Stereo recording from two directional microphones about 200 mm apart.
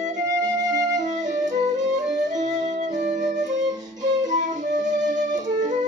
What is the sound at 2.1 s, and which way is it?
Music, 35° right (ahead or behind).